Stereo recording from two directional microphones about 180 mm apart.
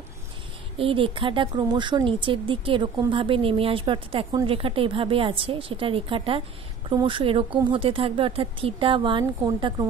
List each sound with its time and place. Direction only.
0.7 s speech: 30° right (ahead or behind)